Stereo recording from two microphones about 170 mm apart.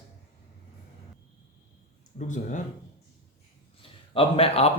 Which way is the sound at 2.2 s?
45° left (ahead or behind).